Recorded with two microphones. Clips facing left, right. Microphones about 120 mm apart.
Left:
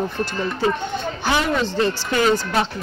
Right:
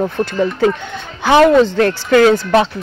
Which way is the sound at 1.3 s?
80° right.